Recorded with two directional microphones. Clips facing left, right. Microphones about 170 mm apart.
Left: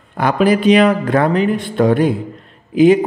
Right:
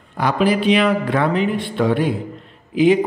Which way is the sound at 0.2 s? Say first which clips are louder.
Left 4 dB; 45° left (ahead or behind).